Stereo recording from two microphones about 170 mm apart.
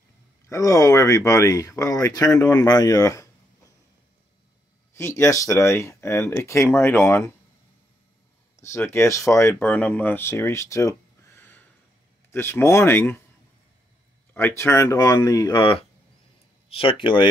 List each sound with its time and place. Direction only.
0.5 s speech: 20° left (ahead or behind)
4.9 s speech: 15° left (ahead or behind)
8.7 s speech: 15° left (ahead or behind)
14.3 s speech: 10° left (ahead or behind)
16.6 s speech: 35° left (ahead or behind)